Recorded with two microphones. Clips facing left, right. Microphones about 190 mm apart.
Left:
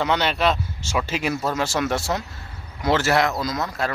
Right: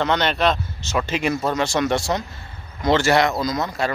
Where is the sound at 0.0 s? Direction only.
5° left (ahead or behind).